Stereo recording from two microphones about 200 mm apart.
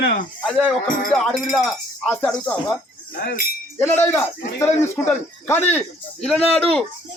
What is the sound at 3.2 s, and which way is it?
Speech, 45° left (ahead or behind).